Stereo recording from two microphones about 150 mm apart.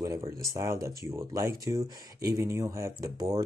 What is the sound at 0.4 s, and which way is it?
Speech, 20° right (ahead or behind).